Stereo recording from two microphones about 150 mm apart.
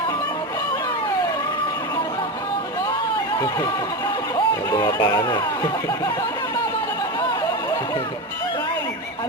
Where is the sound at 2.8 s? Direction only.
25° left (ahead or behind).